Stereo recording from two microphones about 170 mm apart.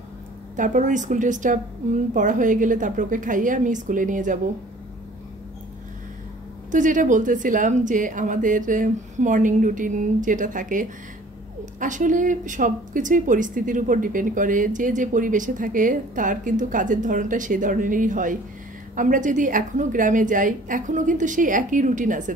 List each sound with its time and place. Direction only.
0.6 s a woman's voice: 50° right (ahead or behind)
6.7 s a woman's voice: 50° right (ahead or behind)